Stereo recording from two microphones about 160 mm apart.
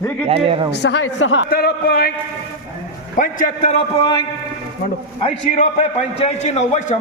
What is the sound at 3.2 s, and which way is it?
Speech, 55° left (ahead or behind).